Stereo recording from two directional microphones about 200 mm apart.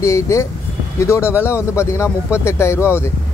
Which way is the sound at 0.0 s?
15° left (ahead or behind).